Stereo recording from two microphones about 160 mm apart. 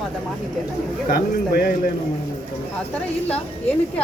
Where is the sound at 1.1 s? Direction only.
70° left (ahead or behind).